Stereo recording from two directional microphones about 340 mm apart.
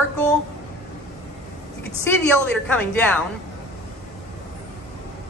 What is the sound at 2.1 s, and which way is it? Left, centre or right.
A woman's voice, centre.